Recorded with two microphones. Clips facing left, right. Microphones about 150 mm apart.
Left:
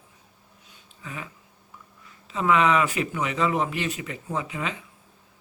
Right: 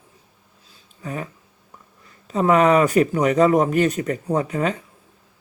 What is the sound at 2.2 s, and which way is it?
Speech, 40° right (ahead or behind).